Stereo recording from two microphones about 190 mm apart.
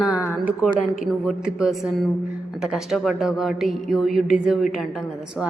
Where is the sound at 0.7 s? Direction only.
45° left (ahead or behind).